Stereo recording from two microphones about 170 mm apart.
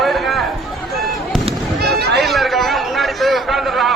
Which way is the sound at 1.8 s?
70° right (ahead or behind).